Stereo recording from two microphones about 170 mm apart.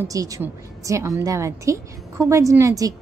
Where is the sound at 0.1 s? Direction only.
20° right (ahead or behind).